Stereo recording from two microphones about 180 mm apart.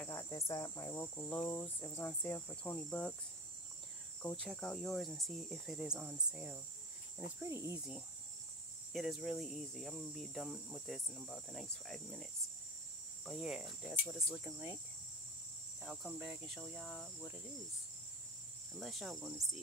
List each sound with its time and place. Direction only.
0.0 s speech: 15° left (ahead or behind)
4.2 s speech: 5° left (ahead or behind); by 7.8 s 15° right (ahead or behind)
8.9 s speech: centre (ahead or behind)
15.8 s speech: centre (ahead or behind)
18.8 s speech: centre (ahead or behind)